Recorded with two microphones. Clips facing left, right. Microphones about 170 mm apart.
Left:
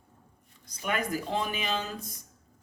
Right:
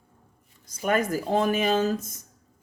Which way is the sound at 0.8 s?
45° right (ahead or behind).